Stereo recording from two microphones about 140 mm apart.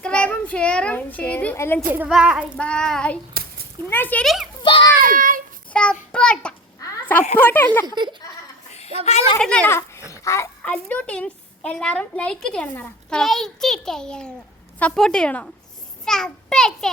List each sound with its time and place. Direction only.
0.0 s a child's voice: 10° left (ahead or behind)
2.0 s a child's voice: 5° right (ahead or behind)
2.6 s a woman's voice: 5° left (ahead or behind)
4.2 s a child's voice: centre (ahead or behind)
4.6 s a child's voice: 40° left (ahead or behind)
4.9 s child singing: 80° right
5.7 s child singing: 5° left (ahead or behind)
7.0 s a sound: 10° left (ahead or behind)
7.3 s a woman's voice: 15° left (ahead or behind)
7.9 s speech: 35° right (ahead or behind)
9.0 s speech: 50° left (ahead or behind)
9.4 s a woman's voice: 10° left (ahead or behind)
10.1 s a sound: 20° left (ahead or behind)
10.6 s a woman's voice: 10° left (ahead or behind)